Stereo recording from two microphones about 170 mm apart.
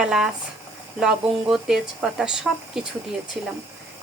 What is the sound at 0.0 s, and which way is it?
Speech, 5° right (ahead or behind).